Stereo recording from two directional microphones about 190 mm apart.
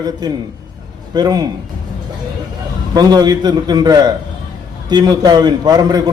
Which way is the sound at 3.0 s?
20° right (ahead or behind).